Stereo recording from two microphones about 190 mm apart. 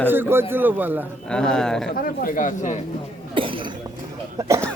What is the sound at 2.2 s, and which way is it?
Speech, 45° left (ahead or behind).